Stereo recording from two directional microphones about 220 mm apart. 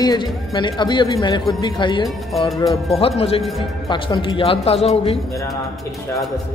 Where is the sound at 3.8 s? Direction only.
20° left (ahead or behind).